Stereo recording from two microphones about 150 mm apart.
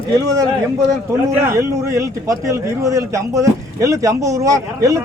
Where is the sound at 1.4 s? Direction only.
20° right (ahead or behind).